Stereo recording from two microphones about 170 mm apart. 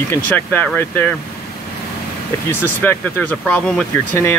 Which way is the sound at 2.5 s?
10° left (ahead or behind).